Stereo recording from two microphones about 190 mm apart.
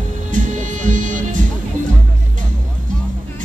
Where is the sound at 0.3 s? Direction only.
40° right (ahead or behind).